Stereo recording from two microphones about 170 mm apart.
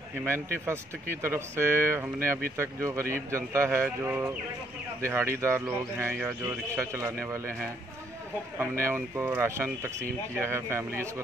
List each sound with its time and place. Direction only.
0.2 s speech: 15° right (ahead or behind)
8.5 s speech: 15° right (ahead or behind)